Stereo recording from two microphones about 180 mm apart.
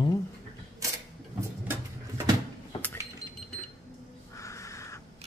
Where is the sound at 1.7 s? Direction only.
15° right (ahead or behind).